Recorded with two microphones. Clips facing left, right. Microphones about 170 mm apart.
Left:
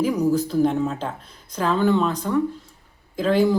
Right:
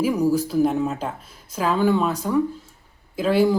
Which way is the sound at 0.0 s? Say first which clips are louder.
Even; 10° right (ahead or behind).